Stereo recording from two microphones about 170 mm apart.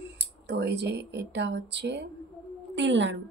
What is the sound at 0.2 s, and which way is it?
A woman's voice, 80° right.